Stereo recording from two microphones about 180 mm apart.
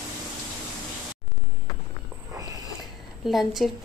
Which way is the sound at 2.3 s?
20° right (ahead or behind).